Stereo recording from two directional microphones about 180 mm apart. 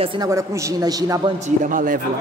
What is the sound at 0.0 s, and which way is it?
Speech, 25° right (ahead or behind).